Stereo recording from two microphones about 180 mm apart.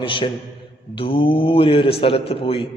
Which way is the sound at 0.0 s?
30° left (ahead or behind).